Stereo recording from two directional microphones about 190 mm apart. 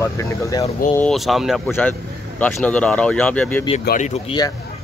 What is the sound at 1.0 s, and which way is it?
Speech, centre (ahead or behind).